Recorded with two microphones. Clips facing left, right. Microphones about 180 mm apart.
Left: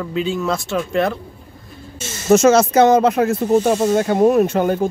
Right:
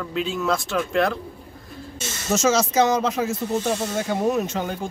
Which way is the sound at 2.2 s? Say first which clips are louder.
Left 9 dB; 60° left (ahead or behind).